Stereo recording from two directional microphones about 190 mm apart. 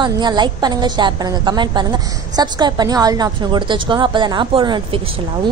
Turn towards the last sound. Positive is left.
turn(degrees=-25)  # may be behind; listen again after turning